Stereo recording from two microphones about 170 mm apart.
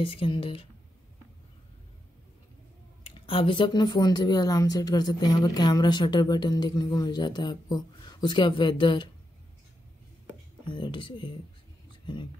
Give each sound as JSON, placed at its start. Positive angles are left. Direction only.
{"t": 0.0, "sound": "speech", "side_deg": 30}
{"t": 3.2, "sound": "speech", "side_deg": 30}
{"t": 10.7, "sound": "speech", "side_deg": 30}